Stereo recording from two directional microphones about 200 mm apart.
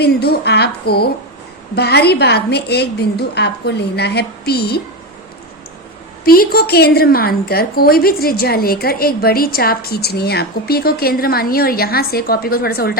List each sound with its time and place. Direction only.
0.0 s a woman's voice: 55° left (ahead or behind)
6.2 s a woman's voice: 50° left (ahead or behind)